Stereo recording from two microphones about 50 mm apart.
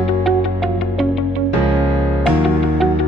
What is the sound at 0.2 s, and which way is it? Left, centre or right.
Music, centre.